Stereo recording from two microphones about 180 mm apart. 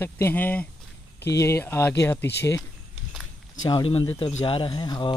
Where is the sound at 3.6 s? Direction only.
25° left (ahead or behind).